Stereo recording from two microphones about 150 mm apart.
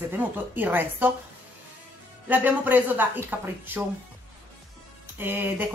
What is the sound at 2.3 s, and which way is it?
Speech, 10° right (ahead or behind).